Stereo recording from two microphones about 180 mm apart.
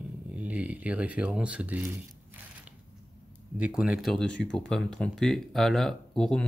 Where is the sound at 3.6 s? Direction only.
5° right (ahead or behind).